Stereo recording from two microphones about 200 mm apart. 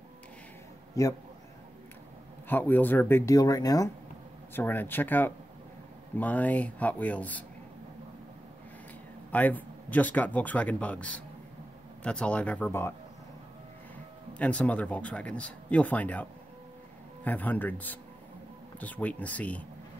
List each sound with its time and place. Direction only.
2.4 s speech: 10° left (ahead or behind)
9.3 s speech: 10° left (ahead or behind)
14.4 s speech: 5° left (ahead or behind)